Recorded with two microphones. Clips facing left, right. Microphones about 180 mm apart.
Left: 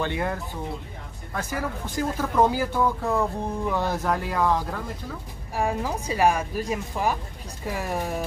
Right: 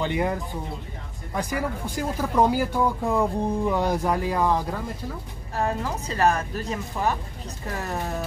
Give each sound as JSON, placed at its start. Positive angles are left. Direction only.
{"t": 0.0, "sound": "speech", "side_deg": -15}
{"t": 5.5, "sound": "a woman's voice", "side_deg": 10}